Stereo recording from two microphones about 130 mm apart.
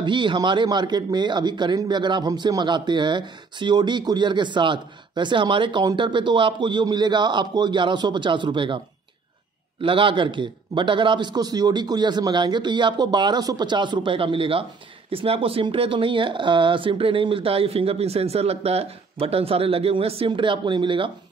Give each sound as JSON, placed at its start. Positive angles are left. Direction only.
{"t": 0.0, "sound": "a man's voice", "side_deg": -35}